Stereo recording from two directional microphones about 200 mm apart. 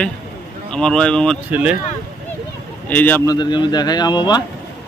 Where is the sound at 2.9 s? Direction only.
10° left (ahead or behind).